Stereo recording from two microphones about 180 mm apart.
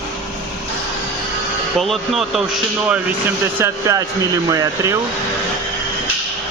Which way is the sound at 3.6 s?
20° right (ahead or behind).